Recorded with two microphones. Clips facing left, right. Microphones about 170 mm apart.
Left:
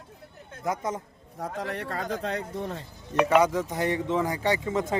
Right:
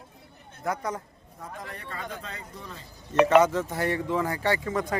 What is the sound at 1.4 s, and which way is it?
Speech, 75° left (ahead or behind).